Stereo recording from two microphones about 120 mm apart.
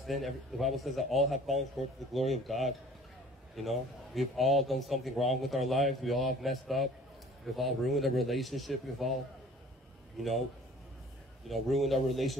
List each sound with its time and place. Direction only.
0.0 s a man's voice: centre (ahead or behind)
10.2 s a man's voice: centre (ahead or behind)
11.4 s a man's voice: centre (ahead or behind)